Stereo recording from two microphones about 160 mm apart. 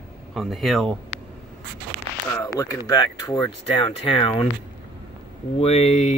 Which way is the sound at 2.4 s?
20° left (ahead or behind).